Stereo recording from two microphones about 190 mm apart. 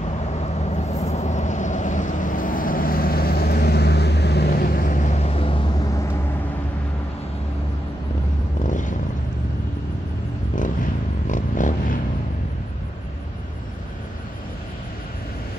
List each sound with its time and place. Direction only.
0.4 s vehicle: 35° left (ahead or behind)
8.6 s vehicle: 40° left (ahead or behind)
11.2 s a sound: 40° left (ahead or behind)